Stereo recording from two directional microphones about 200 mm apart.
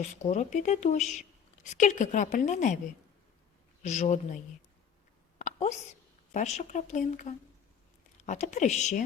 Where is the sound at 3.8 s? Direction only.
35° left (ahead or behind).